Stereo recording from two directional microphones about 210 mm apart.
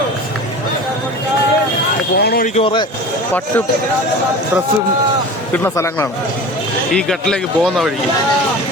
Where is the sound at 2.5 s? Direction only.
25° left (ahead or behind).